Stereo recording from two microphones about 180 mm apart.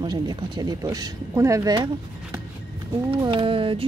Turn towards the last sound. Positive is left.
turn(degrees=-30)  # may be behind; listen again after turning